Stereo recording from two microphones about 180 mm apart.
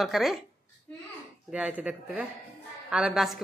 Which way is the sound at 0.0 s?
Centre (ahead or behind).